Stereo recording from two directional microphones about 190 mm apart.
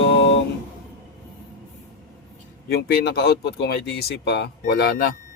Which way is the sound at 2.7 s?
55° left (ahead or behind).